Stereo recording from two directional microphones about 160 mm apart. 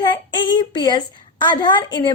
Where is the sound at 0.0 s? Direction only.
25° left (ahead or behind).